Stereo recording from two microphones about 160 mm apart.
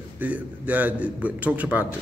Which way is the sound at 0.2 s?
10° right (ahead or behind).